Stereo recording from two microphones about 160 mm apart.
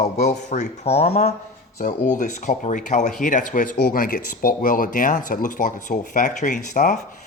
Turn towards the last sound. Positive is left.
turn(degrees=50)  # may be behind; listen again after turning